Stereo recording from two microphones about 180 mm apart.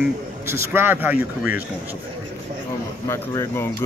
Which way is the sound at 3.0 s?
15° left (ahead or behind).